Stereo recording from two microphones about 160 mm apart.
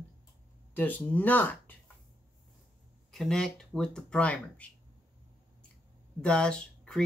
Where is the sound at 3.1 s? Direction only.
Centre (ahead or behind).